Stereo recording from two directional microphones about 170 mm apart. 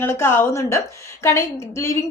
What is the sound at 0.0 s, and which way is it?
A woman's voice, 15° left (ahead or behind).